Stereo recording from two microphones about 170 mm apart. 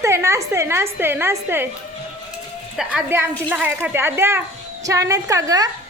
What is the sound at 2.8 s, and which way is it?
A woman's voice, 5° right (ahead or behind).